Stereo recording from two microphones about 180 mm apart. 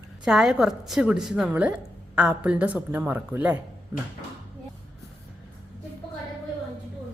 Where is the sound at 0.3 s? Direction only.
Centre (ahead or behind).